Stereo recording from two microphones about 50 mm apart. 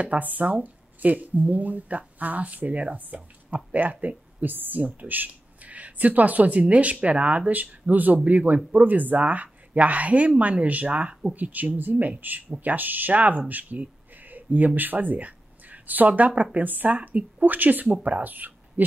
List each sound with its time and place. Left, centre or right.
0.0 s speech: right
13.5 s a sound: right
14.8 s speech: right
18.2 s speech: right